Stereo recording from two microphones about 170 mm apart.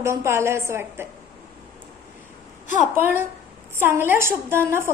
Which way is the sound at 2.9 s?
15° right (ahead or behind).